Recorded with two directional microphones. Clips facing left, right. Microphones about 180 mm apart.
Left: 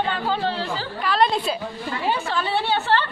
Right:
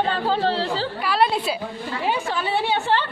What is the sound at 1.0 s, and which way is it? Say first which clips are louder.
Speech: left 1 dB; 10° right (ahead or behind).